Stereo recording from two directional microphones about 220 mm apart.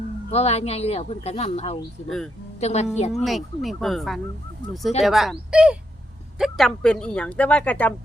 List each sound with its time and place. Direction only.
0.3 s speech: 30° left (ahead or behind)
2.0 s speech: centre (ahead or behind)
2.6 s speech: 30° left (ahead or behind)
3.2 s speech: centre (ahead or behind)